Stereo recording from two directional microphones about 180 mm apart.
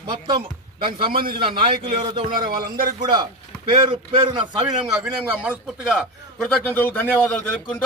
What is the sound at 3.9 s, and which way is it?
Speech, 25° right (ahead or behind).